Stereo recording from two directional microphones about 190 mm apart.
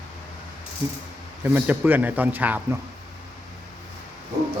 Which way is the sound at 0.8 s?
10° right (ahead or behind).